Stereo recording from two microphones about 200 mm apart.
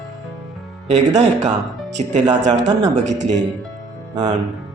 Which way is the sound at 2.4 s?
35° right (ahead or behind).